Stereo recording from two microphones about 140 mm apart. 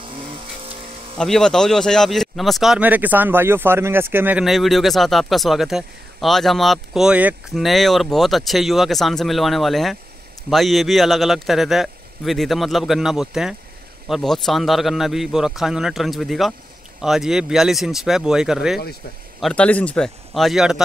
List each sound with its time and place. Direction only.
0.0 s vehicle: 40° right (ahead or behind)
1.1 s speech: 5° left (ahead or behind); by 4.5 s 15° right (ahead or behind)
4.5 s a man's voice: centre (ahead or behind)
19.4 s a man's voice: 10° left (ahead or behind)